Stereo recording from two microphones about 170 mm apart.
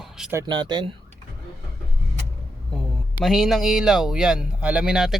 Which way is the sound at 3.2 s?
Centre (ahead or behind).